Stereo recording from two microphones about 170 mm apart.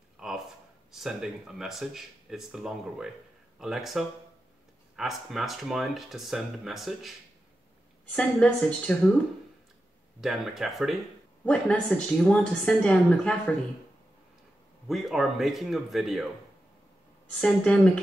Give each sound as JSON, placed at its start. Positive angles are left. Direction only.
{"t": 0.2, "sound": "a sound", "side_deg": -5}
{"t": 0.9, "sound": "a woman's voice", "side_deg": 0}
{"t": 10.2, "sound": "speech", "side_deg": 0}
{"t": 14.9, "sound": "speech", "side_deg": 0}
{"t": 17.3, "sound": "a woman's voice", "side_deg": 5}